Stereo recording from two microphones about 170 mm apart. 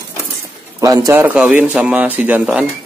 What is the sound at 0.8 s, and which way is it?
Speech, 20° right (ahead or behind).